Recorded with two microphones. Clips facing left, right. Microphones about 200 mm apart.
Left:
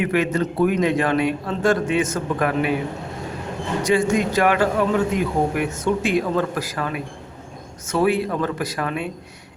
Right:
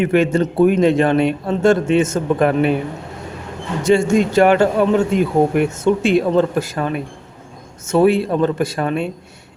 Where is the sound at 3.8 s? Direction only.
25° right (ahead or behind).